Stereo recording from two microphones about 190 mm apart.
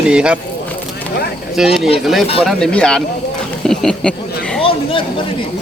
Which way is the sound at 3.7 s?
5° left (ahead or behind).